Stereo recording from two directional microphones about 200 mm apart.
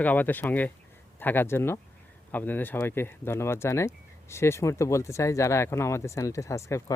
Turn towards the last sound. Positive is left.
turn(degrees=15)  # may be behind; listen again after turning